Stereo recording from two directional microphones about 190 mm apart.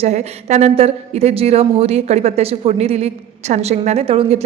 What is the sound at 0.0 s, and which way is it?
Speech, 35° right (ahead or behind).